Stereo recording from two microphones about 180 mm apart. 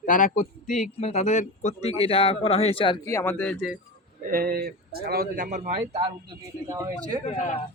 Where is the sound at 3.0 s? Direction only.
15° left (ahead or behind).